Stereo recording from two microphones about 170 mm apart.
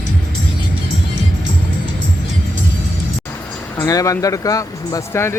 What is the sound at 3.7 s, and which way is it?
Speech, 20° left (ahead or behind).